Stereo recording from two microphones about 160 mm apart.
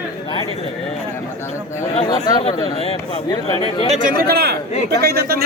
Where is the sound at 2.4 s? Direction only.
35° left (ahead or behind).